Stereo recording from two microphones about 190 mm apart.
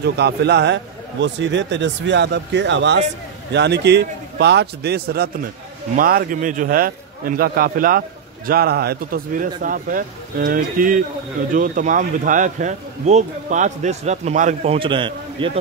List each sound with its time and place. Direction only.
0.0 s a man's voice: 60° right (ahead or behind); by 15.5 s 25° right (ahead or behind)